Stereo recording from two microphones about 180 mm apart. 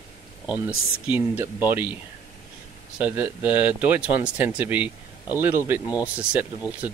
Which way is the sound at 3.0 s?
10° right (ahead or behind).